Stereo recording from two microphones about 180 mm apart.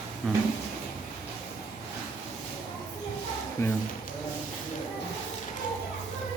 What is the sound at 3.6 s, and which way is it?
Speech, 15° left (ahead or behind).